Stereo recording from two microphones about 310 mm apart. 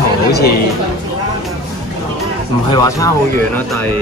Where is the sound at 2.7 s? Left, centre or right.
Centre.